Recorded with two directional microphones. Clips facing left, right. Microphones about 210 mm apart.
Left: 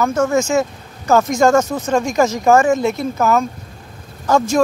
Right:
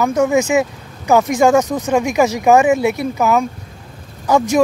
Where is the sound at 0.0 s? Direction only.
15° right (ahead or behind).